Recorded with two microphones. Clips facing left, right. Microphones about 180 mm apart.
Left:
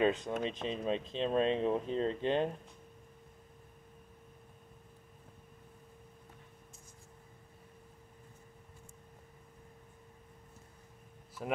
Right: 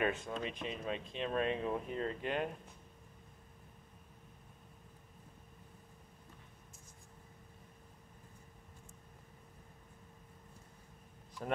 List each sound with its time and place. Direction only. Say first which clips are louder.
0.0 s speech: left 5 dB; 20° left (ahead or behind)